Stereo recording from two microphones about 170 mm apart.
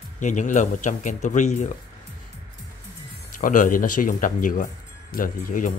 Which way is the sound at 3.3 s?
50° left (ahead or behind).